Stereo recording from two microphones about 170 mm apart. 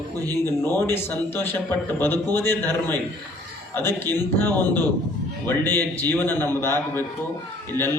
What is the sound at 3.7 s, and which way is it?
A man's voice, 15° left (ahead or behind).